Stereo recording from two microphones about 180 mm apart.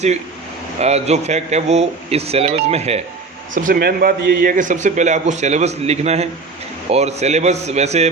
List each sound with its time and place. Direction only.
0.8 s a man's voice: 35° right (ahead or behind)
3.5 s a man's voice: 50° right (ahead or behind)